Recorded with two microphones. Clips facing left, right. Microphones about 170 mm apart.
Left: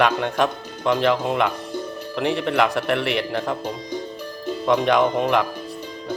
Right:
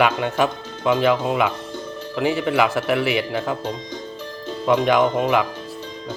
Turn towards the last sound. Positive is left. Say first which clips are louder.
# right 1 dB
turn(degrees=-5)  # may be behind; listen again after turning